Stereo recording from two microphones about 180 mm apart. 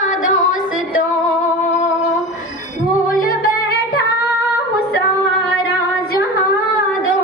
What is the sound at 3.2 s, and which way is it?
Music, 60° left (ahead or behind).